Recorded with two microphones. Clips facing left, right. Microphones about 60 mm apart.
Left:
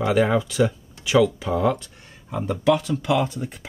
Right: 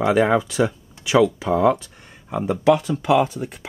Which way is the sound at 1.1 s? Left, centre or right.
Centre.